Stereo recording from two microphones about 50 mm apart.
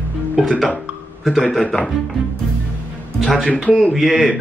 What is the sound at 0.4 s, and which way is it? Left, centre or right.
Speech, centre.